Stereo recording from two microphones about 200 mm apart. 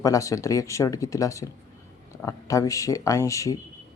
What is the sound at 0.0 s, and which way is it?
Speech, 15° left (ahead or behind).